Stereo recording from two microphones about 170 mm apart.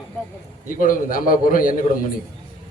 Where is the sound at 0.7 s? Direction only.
55° left (ahead or behind).